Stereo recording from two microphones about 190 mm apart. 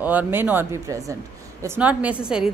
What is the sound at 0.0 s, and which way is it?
A woman's voice, 10° right (ahead or behind).